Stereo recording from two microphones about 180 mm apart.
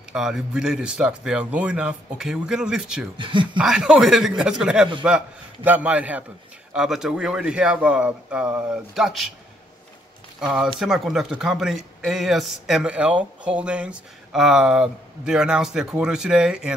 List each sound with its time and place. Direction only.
0.1 s speech: 5° right (ahead or behind)
3.2 s speech: 25° right (ahead or behind)
3.5 s a man's voice: 5° right (ahead or behind)
10.4 s speech: 5° right (ahead or behind)